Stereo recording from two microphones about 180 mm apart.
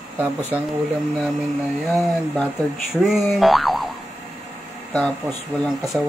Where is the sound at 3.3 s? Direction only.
Centre (ahead or behind).